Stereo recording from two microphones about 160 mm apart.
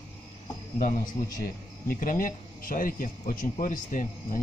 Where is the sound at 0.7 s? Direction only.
60° left (ahead or behind).